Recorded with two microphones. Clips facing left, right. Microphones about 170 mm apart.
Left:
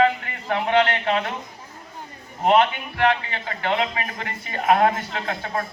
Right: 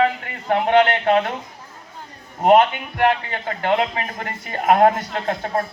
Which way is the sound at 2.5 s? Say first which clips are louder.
Right 4 dB; 45° right (ahead or behind).